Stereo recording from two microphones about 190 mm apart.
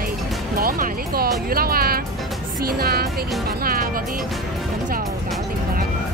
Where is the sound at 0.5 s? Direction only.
50° right (ahead or behind).